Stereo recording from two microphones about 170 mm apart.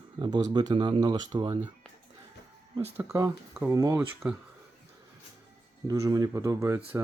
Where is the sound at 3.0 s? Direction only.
20° right (ahead or behind).